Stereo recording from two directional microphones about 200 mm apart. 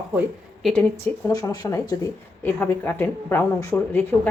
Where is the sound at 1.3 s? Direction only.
20° left (ahead or behind).